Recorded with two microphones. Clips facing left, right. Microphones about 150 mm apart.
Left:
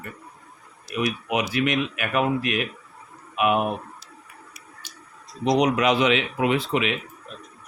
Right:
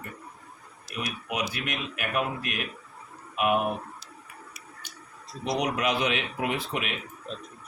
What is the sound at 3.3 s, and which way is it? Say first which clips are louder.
Speech: left 3 dB; 80° left.